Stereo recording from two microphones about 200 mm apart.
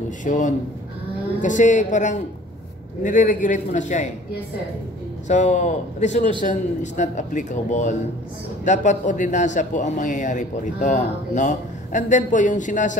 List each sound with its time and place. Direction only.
0.2 s a man's voice: 40° left (ahead or behind)
5.3 s a man's voice: 35° left (ahead or behind)